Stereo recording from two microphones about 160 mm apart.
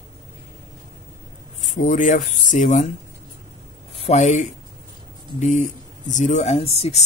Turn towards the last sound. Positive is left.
turn(degrees=40)  # may be behind; listen again after turning